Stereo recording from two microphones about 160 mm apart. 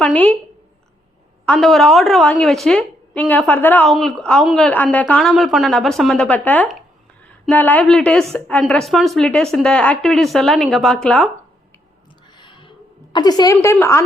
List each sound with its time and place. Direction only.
0.0 s a woman's voice: 10° left (ahead or behind)
1.5 s a woman's voice: centre (ahead or behind)
3.8 s a woman's voice: centre (ahead or behind)
12.4 s gasp: 30° left (ahead or behind)
13.1 s a woman's voice: 25° left (ahead or behind)